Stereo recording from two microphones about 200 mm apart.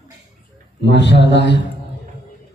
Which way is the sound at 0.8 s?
60° left (ahead or behind).